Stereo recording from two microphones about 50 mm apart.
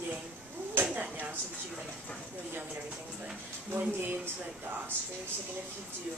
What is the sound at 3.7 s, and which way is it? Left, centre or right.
Speech, right.